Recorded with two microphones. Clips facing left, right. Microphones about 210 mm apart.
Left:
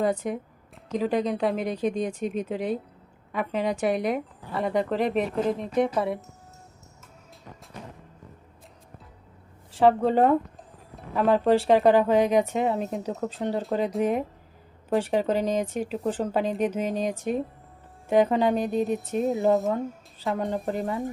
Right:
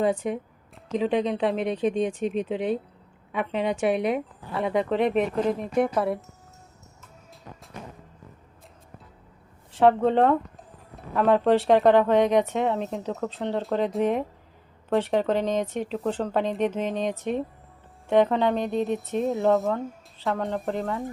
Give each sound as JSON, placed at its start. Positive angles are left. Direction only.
{"t": 0.2, "sound": "speech", "side_deg": 0}
{"t": 9.7, "sound": "speech", "side_deg": 0}
{"t": 19.5, "sound": "speech", "side_deg": 15}